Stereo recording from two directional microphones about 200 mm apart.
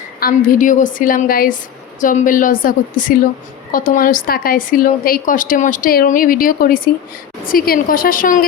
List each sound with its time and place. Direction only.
0.2 s a woman's voice: 45° left (ahead or behind)